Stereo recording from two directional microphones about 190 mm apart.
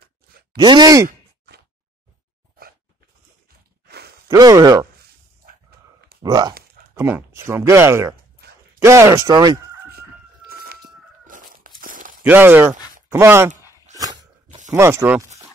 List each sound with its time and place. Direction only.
0.0 s a sound: 55° right (ahead or behind)
0.6 s speech: 20° right (ahead or behind)
1.0 s sigh: 60° right (ahead or behind)
3.8 s sigh: 60° right (ahead or behind)
4.3 s speech: 20° right (ahead or behind)
6.2 s speech: 20° right (ahead or behind)
10.5 s chicken: 55° right (ahead or behind)
11.2 s crumpling: 45° right (ahead or behind)
12.2 s speech: 10° right (ahead or behind)
13.9 s a sound: 20° right (ahead or behind)
14.7 s speech: 15° right (ahead or behind)